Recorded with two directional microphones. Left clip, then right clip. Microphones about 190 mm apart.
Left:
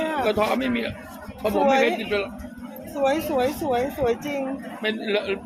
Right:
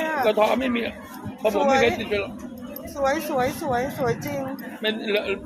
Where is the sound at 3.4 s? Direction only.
25° left (ahead or behind).